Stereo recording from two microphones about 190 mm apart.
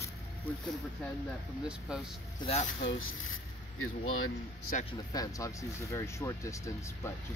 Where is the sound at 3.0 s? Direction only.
90° left.